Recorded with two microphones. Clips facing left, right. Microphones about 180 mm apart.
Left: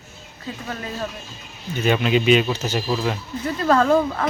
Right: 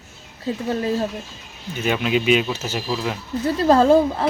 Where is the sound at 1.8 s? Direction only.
5° right (ahead or behind).